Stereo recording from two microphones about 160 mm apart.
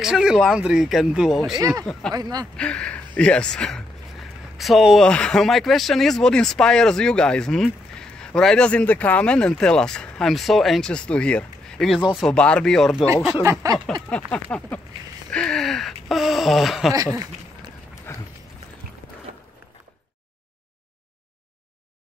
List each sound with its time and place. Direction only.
0.0 s speech: 5° right (ahead or behind)
2.1 s speech: 25° right (ahead or behind)
2.5 s speech: 5° left (ahead or behind)
13.4 s speech: 20° right (ahead or behind)
14.0 s a sound: 5° left (ahead or behind)
15.3 s speech: 5° left (ahead or behind)
16.9 s speech: 20° right (ahead or behind)
18.1 s horse: 15° left (ahead or behind)